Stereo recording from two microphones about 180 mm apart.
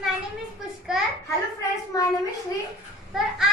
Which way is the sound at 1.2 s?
15° left (ahead or behind).